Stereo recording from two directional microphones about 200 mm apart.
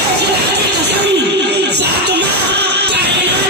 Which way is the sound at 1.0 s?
55° right (ahead or behind).